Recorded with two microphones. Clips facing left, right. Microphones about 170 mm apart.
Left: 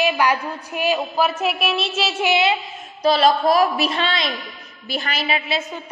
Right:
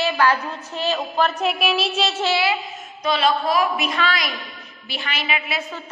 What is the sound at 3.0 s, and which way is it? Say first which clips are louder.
A woman's voice: left 4 dB; 35° left (ahead or behind).